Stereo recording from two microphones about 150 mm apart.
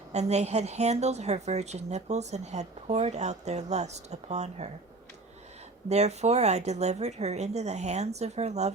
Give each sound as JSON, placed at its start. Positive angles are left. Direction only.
{"t": 0.1, "sound": "a woman's voice", "side_deg": -45}
{"t": 5.9, "sound": "a woman's voice", "side_deg": -45}